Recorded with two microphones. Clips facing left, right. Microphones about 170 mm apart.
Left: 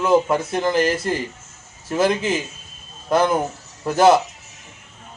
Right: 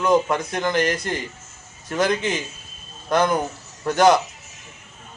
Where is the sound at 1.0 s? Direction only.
30° left (ahead or behind).